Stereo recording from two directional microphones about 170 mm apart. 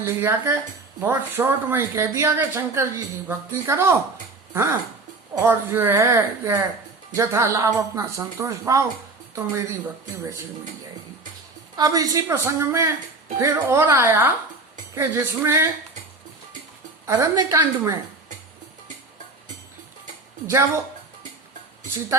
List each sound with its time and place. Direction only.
0.0 s speech: 15° right (ahead or behind)
11.8 s speech: 20° right (ahead or behind)
17.1 s speech: 15° right (ahead or behind)